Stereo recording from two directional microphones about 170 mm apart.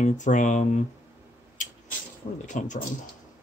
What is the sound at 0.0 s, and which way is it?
Speech, 45° left (ahead or behind).